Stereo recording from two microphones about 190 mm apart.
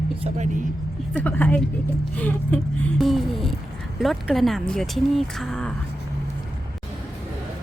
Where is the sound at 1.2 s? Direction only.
5° left (ahead or behind).